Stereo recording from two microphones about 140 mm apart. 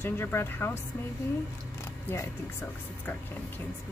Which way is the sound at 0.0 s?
15° left (ahead or behind).